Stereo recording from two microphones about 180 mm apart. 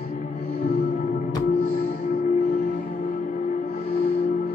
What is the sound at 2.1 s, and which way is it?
Music, 50° left (ahead or behind).